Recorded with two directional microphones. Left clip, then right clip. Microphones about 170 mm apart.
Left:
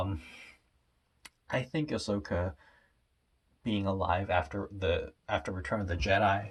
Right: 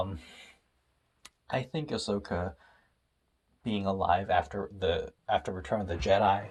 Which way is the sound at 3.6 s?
25° right (ahead or behind).